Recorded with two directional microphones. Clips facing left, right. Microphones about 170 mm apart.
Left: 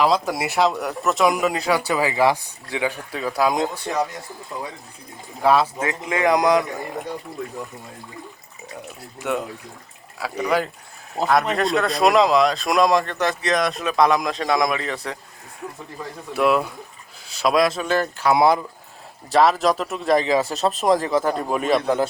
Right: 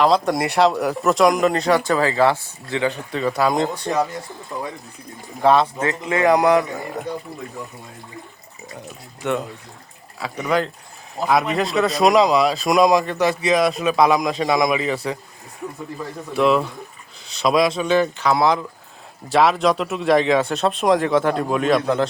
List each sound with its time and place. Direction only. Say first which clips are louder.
0.0 s speech: right 3 dB; 5° left (ahead or behind)
5.4 s speech: right 2 dB; 5° left (ahead or behind)
9.2 s speech: right 2 dB; 5° left (ahead or behind)
16.3 s speech: right 2 dB; 5° left (ahead or behind)